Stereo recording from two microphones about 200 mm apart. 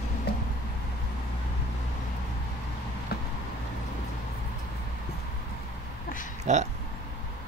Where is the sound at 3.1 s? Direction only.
50° left (ahead or behind).